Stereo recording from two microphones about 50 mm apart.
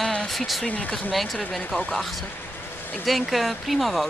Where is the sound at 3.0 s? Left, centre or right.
Centre.